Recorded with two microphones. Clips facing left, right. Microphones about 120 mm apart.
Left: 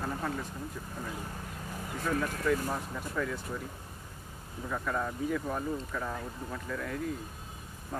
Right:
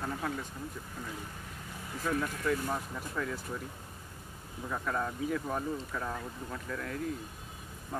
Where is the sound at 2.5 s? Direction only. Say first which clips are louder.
Left 2 dB; centre (ahead or behind).